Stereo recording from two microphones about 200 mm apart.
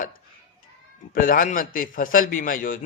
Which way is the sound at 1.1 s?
45° left (ahead or behind).